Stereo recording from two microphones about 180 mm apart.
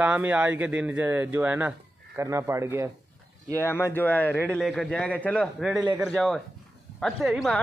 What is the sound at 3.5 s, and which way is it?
Speech, 10° left (ahead or behind).